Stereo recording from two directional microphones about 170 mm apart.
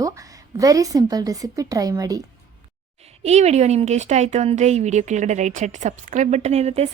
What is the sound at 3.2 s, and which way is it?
Speech, 40° right (ahead or behind).